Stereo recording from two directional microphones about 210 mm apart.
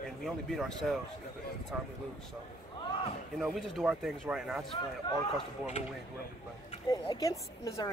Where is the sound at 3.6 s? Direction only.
Centre (ahead or behind).